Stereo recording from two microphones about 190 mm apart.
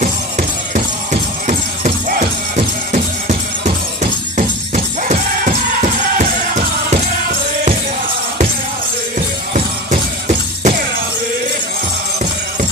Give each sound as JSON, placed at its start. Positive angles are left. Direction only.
{"t": 0.0, "sound": "music", "side_deg": -45}
{"t": 9.5, "sound": "music", "side_deg": -40}